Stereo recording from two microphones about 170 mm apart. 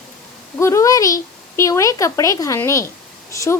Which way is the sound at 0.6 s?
15° left (ahead or behind).